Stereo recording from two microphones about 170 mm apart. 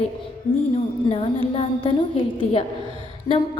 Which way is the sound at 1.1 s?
35° left (ahead or behind).